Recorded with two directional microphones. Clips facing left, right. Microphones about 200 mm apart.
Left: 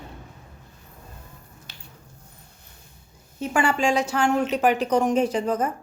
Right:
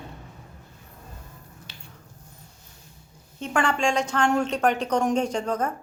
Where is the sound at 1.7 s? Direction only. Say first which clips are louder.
Right 1 dB; 45° left (ahead or behind).